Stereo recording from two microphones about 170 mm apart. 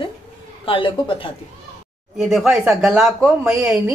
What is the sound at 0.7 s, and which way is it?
Speech, 30° left (ahead or behind).